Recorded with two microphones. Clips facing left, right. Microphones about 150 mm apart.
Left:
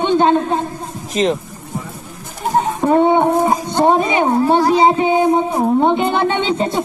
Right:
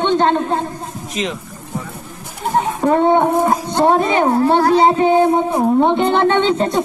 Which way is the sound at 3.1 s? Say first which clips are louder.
Even; 15° left (ahead or behind).